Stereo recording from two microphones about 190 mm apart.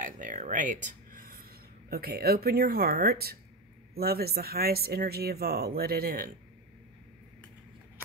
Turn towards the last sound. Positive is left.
turn(degrees=-50)  # may be behind; listen again after turning